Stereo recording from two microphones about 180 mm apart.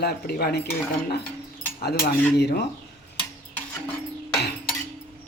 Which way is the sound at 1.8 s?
65° left (ahead or behind).